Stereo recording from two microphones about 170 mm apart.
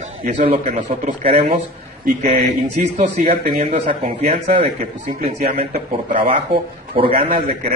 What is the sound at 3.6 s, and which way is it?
A man's voice, 40° right (ahead or behind).